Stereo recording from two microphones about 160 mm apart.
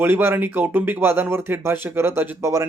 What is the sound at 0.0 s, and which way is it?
Speech, 15° right (ahead or behind).